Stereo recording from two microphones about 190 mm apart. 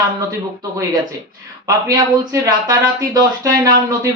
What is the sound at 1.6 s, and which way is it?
Speech, 20° right (ahead or behind).